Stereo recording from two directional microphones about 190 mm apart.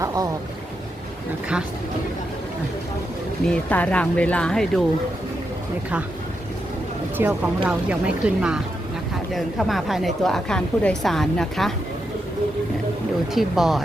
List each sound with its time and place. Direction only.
0.0 s speech: 15° right (ahead or behind)
3.5 s a woman's voice: 10° left (ahead or behind)
7.2 s a woman's voice: 10° right (ahead or behind)
13.3 s a woman's voice: centre (ahead or behind)